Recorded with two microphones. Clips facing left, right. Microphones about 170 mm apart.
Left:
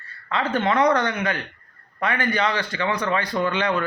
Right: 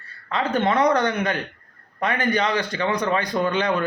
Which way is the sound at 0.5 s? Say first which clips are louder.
Even; 15° right (ahead or behind).